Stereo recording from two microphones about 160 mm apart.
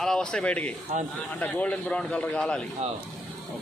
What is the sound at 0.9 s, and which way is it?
Speech, 45° right (ahead or behind).